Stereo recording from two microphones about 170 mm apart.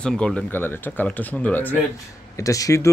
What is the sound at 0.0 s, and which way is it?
Speech, 5° left (ahead or behind).